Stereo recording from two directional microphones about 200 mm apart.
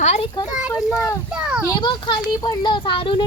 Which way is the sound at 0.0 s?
35° left (ahead or behind).